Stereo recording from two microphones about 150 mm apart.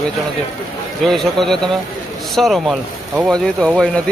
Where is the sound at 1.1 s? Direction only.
Centre (ahead or behind).